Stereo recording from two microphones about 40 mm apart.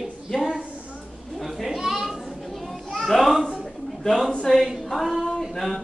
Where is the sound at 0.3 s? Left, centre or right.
Left.